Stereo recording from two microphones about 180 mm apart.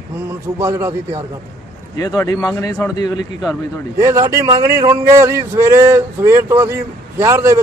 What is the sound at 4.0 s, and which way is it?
Speech, 15° right (ahead or behind).